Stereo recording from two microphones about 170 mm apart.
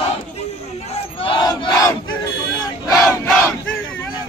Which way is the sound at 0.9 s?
35° left (ahead or behind).